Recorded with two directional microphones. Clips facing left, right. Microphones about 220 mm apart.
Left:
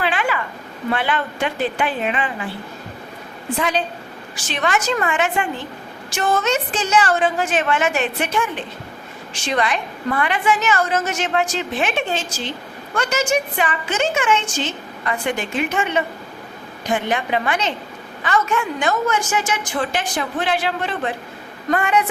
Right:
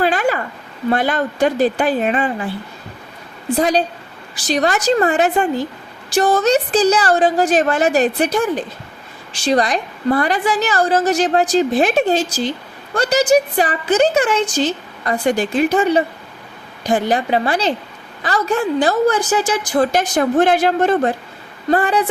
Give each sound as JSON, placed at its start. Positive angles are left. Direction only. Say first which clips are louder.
{"t": 0.0, "sound": "a sound", "louder": "right 5 dB", "side_deg": -40}
{"t": 0.9, "sound": "a woman's voice", "louder": "right 5 dB", "side_deg": -40}
{"t": 3.6, "sound": "a woman's voice", "louder": "right 6 dB", "side_deg": -40}